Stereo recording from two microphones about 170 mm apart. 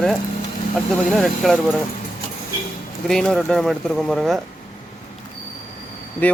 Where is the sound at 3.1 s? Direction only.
5° left (ahead or behind).